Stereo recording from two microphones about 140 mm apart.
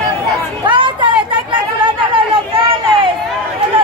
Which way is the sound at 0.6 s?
35° right (ahead or behind).